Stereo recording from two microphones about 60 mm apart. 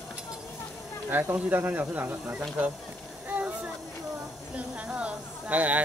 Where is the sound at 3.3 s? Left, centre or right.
Right.